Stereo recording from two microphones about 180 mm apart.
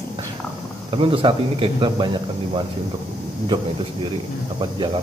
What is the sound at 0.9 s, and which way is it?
Speech, 30° right (ahead or behind).